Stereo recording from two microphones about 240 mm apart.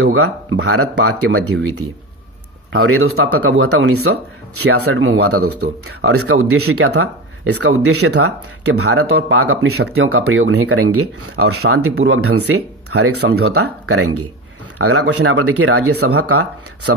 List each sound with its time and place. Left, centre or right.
0.0 s a man's voice: right
2.9 s a man's voice: right